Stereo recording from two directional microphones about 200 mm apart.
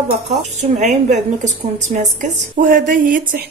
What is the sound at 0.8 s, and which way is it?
A woman's voice, 35° right (ahead or behind).